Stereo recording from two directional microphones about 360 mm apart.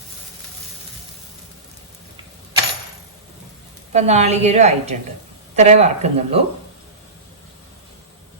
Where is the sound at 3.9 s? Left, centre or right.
Centre.